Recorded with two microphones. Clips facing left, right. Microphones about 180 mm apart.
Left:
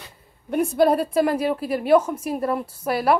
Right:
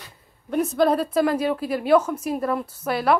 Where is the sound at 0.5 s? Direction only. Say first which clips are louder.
Left 1 dB; 10° left (ahead or behind).